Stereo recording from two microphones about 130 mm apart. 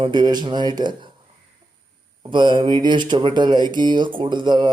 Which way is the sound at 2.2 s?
40° right (ahead or behind).